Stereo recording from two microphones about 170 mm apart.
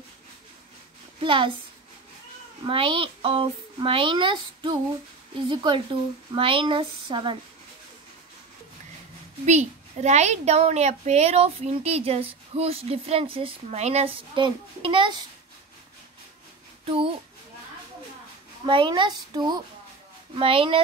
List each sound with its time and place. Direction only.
1.2 s speech: 30° right (ahead or behind)
2.6 s speech: 30° right (ahead or behind)
9.5 s a child's voice: 40° right (ahead or behind)
16.8 s speech: 30° right (ahead or behind)
18.7 s a child's voice: 30° right (ahead or behind)